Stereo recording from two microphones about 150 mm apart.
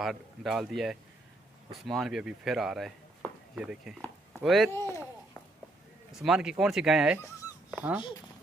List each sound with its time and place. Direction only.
0.0 s speech: centre (ahead or behind)
4.7 s a sound: 20° left (ahead or behind)
6.1 s speech: 5° right (ahead or behind)